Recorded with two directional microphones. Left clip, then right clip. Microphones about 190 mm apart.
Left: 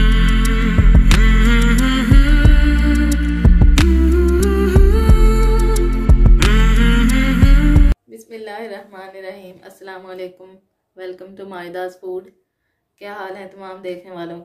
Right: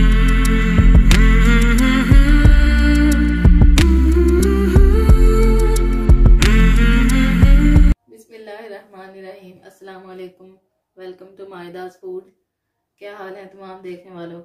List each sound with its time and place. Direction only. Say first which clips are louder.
0.0 s music: even; centre (ahead or behind)
8.3 s a sound: left 5 dB; 40° left (ahead or behind)
11.0 s a woman's voice: left 4 dB; 35° left (ahead or behind)
13.0 s a woman's voice: left 4 dB; 40° left (ahead or behind)